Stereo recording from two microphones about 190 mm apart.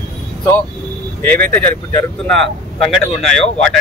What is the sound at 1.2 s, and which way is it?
Speech, 10° left (ahead or behind).